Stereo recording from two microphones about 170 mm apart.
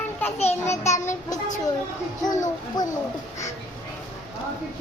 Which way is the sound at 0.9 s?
20° left (ahead or behind).